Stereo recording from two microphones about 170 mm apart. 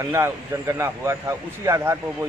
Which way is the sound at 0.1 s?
15° right (ahead or behind).